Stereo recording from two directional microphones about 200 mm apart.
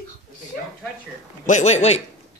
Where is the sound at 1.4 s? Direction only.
35° left (ahead or behind).